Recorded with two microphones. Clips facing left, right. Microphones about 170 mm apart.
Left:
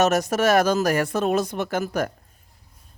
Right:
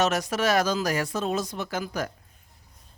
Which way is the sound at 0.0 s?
45° left (ahead or behind).